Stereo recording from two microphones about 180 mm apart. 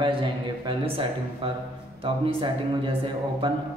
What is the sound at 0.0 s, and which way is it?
A man's voice, 25° right (ahead or behind).